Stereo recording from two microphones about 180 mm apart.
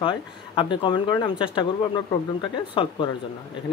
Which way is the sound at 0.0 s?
30° left (ahead or behind).